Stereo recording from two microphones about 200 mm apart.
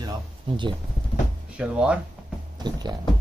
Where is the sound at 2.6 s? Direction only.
20° right (ahead or behind).